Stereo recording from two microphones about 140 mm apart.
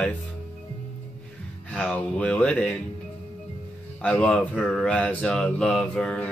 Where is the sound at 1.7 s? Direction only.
10° left (ahead or behind).